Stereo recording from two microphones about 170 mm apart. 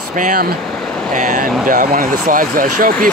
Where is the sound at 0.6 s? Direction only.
Centre (ahead or behind).